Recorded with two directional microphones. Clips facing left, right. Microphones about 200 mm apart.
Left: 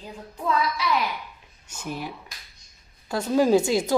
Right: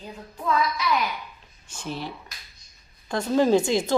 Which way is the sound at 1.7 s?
10° left (ahead or behind).